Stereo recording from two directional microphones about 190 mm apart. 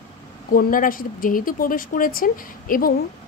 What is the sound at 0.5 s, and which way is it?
A woman's voice, 50° left (ahead or behind).